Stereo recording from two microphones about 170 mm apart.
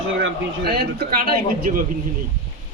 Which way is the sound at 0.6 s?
65° right (ahead or behind).